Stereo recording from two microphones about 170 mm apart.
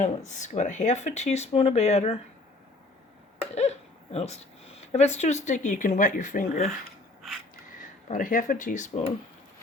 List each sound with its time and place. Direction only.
0.3 s speech: 45° left (ahead or behind)
3.5 s speech: 40° left (ahead or behind)
7.2 s a sound: centre (ahead or behind)
8.0 s speech: 50° left (ahead or behind)